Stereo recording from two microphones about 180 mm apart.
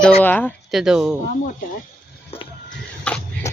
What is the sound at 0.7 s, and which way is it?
Speech, centre (ahead or behind).